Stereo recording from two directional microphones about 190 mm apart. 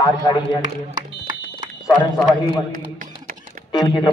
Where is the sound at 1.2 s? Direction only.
25° right (ahead or behind).